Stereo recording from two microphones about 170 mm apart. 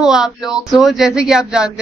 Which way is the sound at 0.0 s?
5° right (ahead or behind).